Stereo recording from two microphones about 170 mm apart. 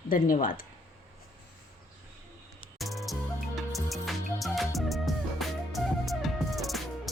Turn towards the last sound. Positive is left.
turn(degrees=0)  # may be behind; listen again after turning